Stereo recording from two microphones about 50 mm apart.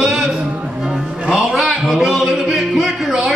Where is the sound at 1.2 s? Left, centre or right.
Centre.